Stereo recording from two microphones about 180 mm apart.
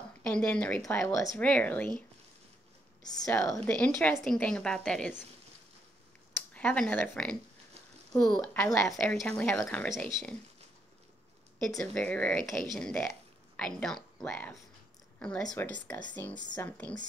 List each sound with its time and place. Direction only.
0.2 s speech: 5° left (ahead or behind)
3.4 s a woman's voice: 15° left (ahead or behind)
6.5 s a woman's voice: 5° left (ahead or behind)
11.6 s a woman's voice: centre (ahead or behind)
15.9 s speech: 25° left (ahead or behind)
16.5 s speech: 10° left (ahead or behind)